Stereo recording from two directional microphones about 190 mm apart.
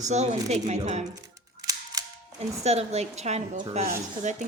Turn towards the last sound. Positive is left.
turn(degrees=-40)  # may be behind; listen again after turning